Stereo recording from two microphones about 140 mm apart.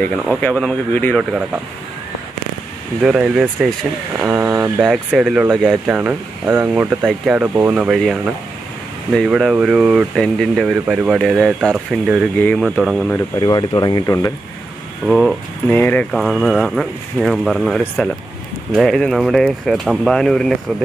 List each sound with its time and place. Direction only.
0.2 s speech: 10° left (ahead or behind)
3.0 s speech: 5° right (ahead or behind)
4.2 s vehicle: 15° right (ahead or behind)
4.8 s speech: 5° right (ahead or behind)
12.4 s speech: 10° left (ahead or behind)
12.6 s speech: centre (ahead or behind)
13.4 s speech: 30° left (ahead or behind)
15.0 s speech: centre (ahead or behind)
15.7 s speech: 10° left (ahead or behind)
16.1 s speech: centre (ahead or behind)